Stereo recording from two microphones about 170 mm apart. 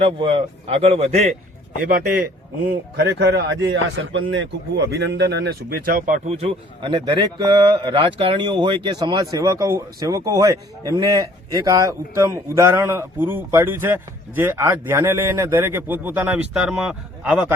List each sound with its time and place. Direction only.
0.0 s a man's voice: 30° right (ahead or behind)
2.9 s a man's voice: 90° right; by 17.5 s 5° right (ahead or behind)